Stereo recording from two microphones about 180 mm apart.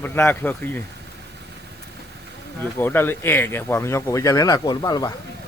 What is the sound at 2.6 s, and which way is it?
Speech, 10° left (ahead or behind).